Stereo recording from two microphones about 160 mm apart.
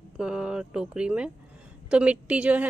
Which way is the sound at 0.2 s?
5° right (ahead or behind).